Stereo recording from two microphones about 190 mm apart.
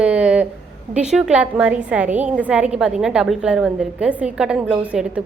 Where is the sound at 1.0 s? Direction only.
5° right (ahead or behind).